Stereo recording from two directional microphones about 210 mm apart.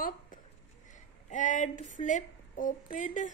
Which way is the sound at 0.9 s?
35° left (ahead or behind).